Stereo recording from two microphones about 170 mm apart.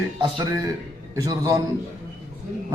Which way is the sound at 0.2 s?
25° right (ahead or behind).